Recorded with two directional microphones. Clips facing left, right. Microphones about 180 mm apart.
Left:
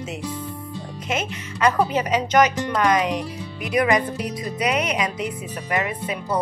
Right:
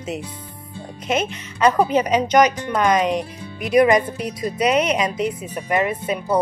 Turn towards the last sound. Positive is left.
turn(degrees=-25)  # may be behind; listen again after turning